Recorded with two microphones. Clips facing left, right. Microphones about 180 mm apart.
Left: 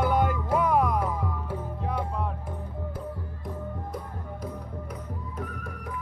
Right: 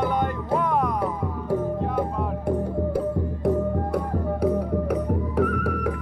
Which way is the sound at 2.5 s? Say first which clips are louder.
Right 13 dB; 75° right (ahead or behind).